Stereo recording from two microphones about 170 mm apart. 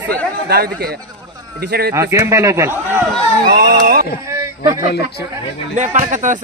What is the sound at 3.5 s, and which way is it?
Speech, 65° right (ahead or behind).